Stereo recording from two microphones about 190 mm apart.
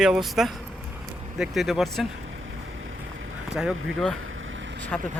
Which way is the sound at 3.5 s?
5° right (ahead or behind).